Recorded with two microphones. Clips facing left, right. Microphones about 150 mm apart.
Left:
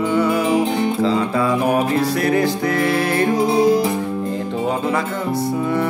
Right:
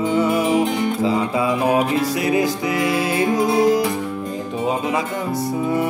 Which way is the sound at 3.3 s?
25° left (ahead or behind).